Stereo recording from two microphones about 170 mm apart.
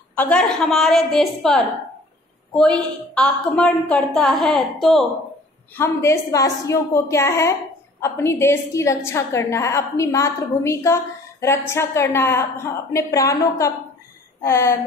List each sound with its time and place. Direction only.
0.1 s a woman's voice: 10° left (ahead or behind)
5.8 s a woman's voice: 15° left (ahead or behind)